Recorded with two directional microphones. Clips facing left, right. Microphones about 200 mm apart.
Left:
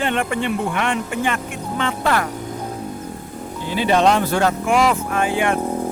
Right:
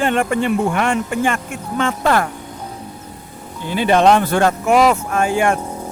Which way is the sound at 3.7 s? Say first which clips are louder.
Right 3 dB; 55° right (ahead or behind).